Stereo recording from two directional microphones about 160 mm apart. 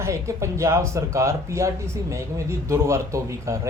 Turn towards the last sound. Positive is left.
turn(degrees=-20)  # may be behind; listen again after turning